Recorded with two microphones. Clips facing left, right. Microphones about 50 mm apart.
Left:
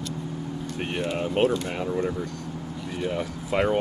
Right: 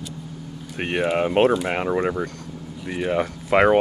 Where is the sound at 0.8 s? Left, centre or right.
Right.